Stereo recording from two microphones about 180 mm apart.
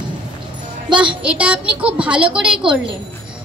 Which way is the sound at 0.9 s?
5° right (ahead or behind).